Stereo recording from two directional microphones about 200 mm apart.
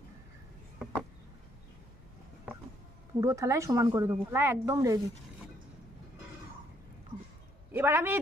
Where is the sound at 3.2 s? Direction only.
15° right (ahead or behind).